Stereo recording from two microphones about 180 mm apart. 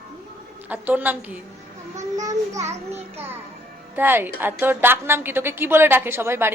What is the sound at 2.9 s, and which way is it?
Music, 35° right (ahead or behind).